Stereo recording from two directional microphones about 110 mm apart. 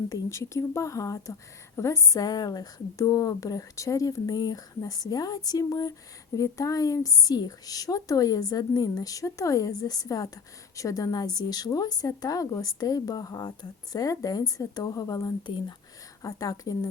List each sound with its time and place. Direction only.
0.1 s speech: 25° left (ahead or behind)